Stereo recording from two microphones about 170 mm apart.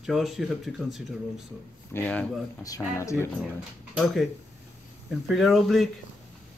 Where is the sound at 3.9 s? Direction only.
Centre (ahead or behind).